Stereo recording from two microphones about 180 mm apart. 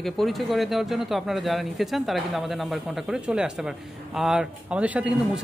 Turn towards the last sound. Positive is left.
turn(degrees=-5)  # may be behind; listen again after turning